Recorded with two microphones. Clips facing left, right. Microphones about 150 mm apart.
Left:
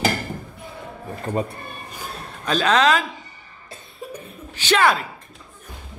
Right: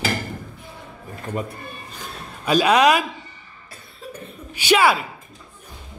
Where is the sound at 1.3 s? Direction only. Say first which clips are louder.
Left 3 dB; 10° left (ahead or behind).